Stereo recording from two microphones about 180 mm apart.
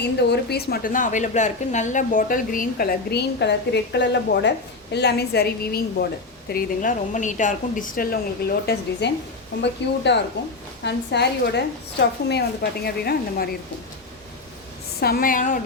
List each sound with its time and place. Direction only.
0.0 s a woman's voice: 70° left (ahead or behind)
15.0 s a woman's voice: 55° left (ahead or behind)